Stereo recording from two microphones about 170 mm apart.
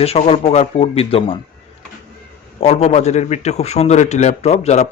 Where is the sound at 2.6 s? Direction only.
40° left (ahead or behind).